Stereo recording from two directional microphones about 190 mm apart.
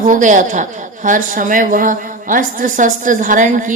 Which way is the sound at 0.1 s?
40° right (ahead or behind).